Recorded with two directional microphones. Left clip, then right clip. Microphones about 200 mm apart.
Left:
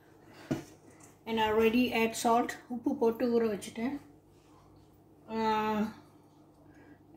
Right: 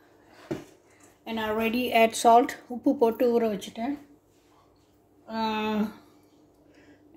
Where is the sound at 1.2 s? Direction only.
50° right (ahead or behind).